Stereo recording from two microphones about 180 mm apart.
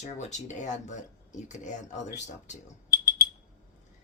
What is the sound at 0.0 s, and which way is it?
Speech, 40° left (ahead or behind).